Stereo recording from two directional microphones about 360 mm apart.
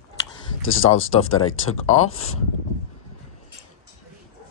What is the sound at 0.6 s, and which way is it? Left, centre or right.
Speech, left.